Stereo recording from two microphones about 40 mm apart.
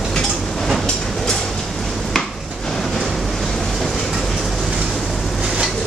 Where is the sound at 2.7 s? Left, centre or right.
Centre.